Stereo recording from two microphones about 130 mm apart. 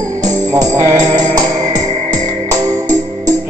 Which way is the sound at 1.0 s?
30° right (ahead or behind).